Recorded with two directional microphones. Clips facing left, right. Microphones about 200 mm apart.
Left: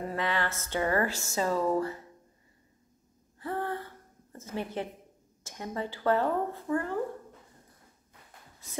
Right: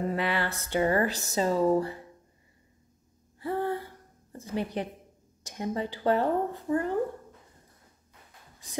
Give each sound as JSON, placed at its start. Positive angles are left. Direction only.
{"t": 0.1, "sound": "speech", "side_deg": -15}
{"t": 3.4, "sound": "gasp", "side_deg": -15}
{"t": 4.3, "sound": "speech", "side_deg": -15}